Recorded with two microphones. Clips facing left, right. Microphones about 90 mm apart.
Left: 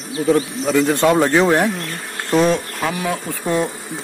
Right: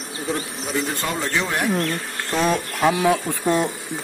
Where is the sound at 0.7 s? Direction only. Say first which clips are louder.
Left 11 dB; 75° left (ahead or behind).